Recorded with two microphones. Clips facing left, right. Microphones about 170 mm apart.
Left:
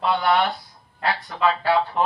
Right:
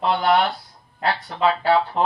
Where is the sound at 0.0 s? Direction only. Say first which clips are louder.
Right 1 dB; 35° right (ahead or behind).